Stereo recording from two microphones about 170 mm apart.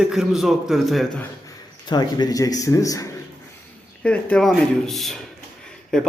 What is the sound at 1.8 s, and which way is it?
Speech, 25° left (ahead or behind).